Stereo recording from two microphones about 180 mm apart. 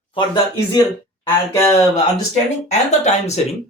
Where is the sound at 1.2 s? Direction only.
15° left (ahead or behind).